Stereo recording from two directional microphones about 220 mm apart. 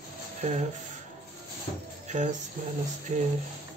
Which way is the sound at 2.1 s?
35° right (ahead or behind).